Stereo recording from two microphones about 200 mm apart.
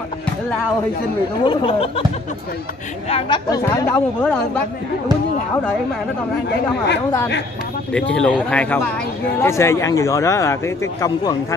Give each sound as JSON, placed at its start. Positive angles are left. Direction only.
{"t": 1.4, "sound": "speech", "side_deg": 25}
{"t": 3.1, "sound": "speech", "side_deg": 30}
{"t": 3.4, "sound": "speech", "side_deg": 15}
{"t": 8.1, "sound": "speech", "side_deg": 5}